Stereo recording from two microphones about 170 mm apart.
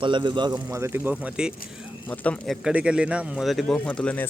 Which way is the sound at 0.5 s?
15° right (ahead or behind).